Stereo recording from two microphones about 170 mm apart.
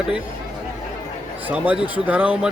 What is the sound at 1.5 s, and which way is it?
Speech, 10° right (ahead or behind).